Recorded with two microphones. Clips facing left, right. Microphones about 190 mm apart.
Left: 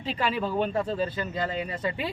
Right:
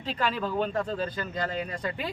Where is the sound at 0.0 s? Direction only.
5° left (ahead or behind).